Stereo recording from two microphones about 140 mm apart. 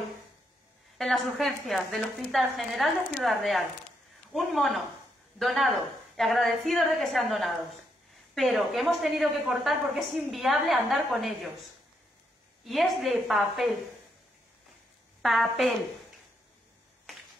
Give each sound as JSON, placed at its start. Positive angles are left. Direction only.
{"t": 0.9, "sound": "a woman's voice", "side_deg": 0}
{"t": 12.6, "sound": "a woman's voice", "side_deg": 0}
{"t": 15.2, "sound": "a woman's voice", "side_deg": 0}